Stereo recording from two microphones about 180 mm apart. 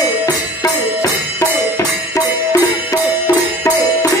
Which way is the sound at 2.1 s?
20° left (ahead or behind).